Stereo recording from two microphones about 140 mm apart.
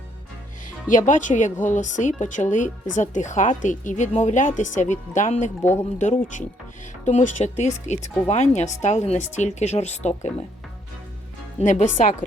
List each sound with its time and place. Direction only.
0.9 s speech: 65° left (ahead or behind)
11.6 s speech: 65° left (ahead or behind)